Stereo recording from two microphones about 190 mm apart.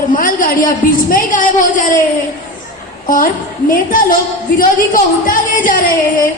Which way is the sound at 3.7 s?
45° left (ahead or behind).